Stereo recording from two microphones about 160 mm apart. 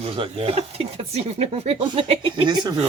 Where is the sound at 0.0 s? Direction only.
35° right (ahead or behind).